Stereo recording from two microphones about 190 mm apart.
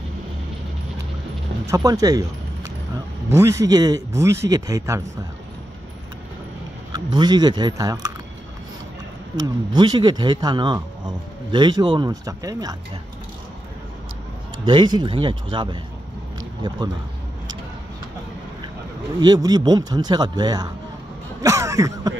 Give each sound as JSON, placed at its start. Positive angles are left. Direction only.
{"t": 1.7, "sound": "a man's voice", "side_deg": -20}
{"t": 6.9, "sound": "speech", "side_deg": -25}
{"t": 9.4, "sound": "speech", "side_deg": -25}
{"t": 14.6, "sound": "speech", "side_deg": -25}
{"t": 19.1, "sound": "speech", "side_deg": -20}
{"t": 21.4, "sound": "a sound", "side_deg": -15}